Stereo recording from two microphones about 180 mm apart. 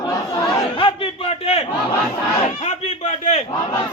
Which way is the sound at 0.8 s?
30° left (ahead or behind).